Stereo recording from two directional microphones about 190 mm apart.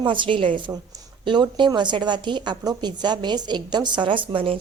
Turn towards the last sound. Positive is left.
turn(degrees=-25)  # may be behind; listen again after turning